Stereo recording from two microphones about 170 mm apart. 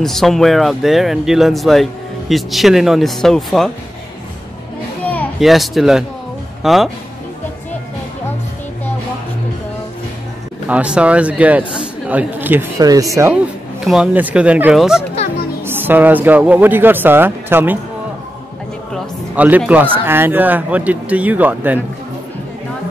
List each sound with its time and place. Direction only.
0.0 s speech: centre (ahead or behind)
5.4 s speech: centre (ahead or behind)
10.7 s speech: 5° right (ahead or behind)
13.8 s speech: 5° right (ahead or behind)
19.3 s speech: 10° right (ahead or behind)